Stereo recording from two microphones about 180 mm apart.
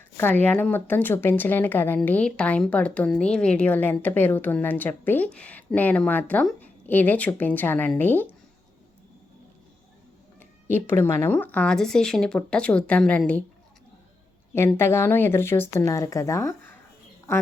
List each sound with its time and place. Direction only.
0.2 s speech: 10° left (ahead or behind)
10.8 s speech: 15° left (ahead or behind)
14.5 s speech: 15° left (ahead or behind)